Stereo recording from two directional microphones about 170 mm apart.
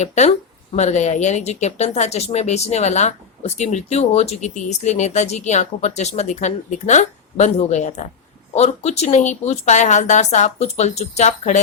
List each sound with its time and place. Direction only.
0.0 s speech: 40° left (ahead or behind)